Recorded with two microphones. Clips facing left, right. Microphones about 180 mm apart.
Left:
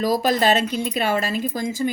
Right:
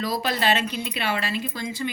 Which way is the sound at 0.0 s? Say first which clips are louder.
Left 6 dB; 45° left (ahead or behind).